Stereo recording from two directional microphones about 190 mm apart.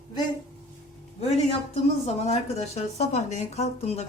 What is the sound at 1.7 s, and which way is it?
A woman's voice, 35° left (ahead or behind).